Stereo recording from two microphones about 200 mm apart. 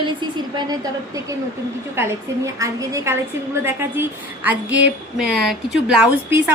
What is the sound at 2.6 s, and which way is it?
A woman's voice, 15° right (ahead or behind).